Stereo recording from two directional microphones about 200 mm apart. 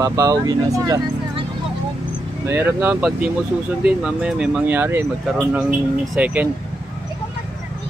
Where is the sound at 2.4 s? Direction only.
10° right (ahead or behind).